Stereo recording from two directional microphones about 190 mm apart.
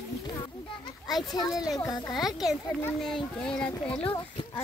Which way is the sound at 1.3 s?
20° left (ahead or behind).